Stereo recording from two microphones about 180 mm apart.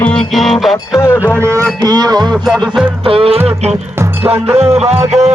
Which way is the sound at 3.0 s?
30° right (ahead or behind).